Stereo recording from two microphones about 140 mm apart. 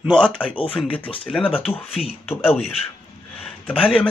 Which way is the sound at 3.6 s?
5° left (ahead or behind).